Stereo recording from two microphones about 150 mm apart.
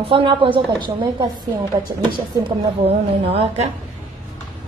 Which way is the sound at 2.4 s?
40° right (ahead or behind).